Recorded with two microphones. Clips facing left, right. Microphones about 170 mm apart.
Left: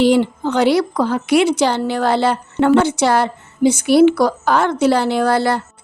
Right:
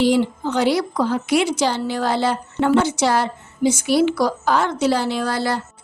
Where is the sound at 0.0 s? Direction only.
65° left (ahead or behind).